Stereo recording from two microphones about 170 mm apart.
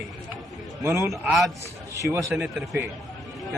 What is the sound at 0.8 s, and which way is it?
Speech, 15° right (ahead or behind).